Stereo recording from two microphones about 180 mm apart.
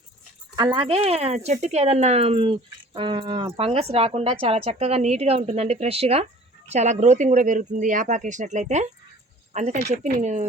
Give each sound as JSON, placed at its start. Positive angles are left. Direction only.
{"t": 0.5, "sound": "speech", "side_deg": -25}